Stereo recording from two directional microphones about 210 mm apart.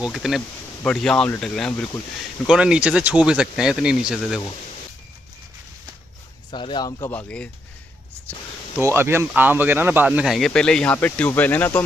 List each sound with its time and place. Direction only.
0.0 s speech: centre (ahead or behind)
6.5 s speech: 20° left (ahead or behind)
7.1 s speech: 5° left (ahead or behind)
8.8 s speech: 10° right (ahead or behind); by 11.8 s 10° left (ahead or behind)